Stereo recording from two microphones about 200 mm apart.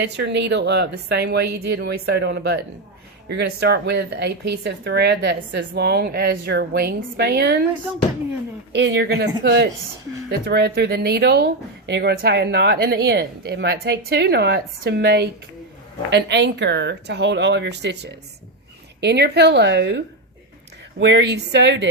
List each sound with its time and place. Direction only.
0.0 s speech: 60° right (ahead or behind)
7.9 s speech: 5° right (ahead or behind)
8.7 s speech: 60° right (ahead or behind)